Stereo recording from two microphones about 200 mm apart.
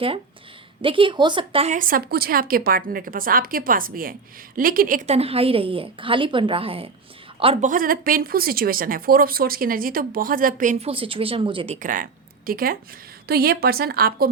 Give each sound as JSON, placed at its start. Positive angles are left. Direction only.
{"t": 0.8, "sound": "a woman's voice", "side_deg": -25}
{"t": 7.7, "sound": "speech", "side_deg": -45}